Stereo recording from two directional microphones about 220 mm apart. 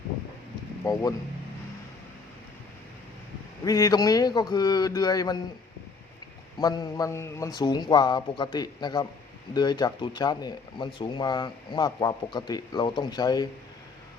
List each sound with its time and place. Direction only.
0.8 s a man's voice: 15° left (ahead or behind)
3.6 s a man's voice: 15° left (ahead or behind)
6.6 s a man's voice: 15° left (ahead or behind)